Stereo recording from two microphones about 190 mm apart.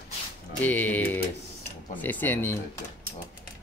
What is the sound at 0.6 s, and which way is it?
Speech, 10° left (ahead or behind).